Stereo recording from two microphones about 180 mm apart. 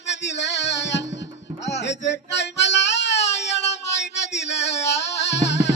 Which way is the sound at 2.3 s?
75° left (ahead or behind).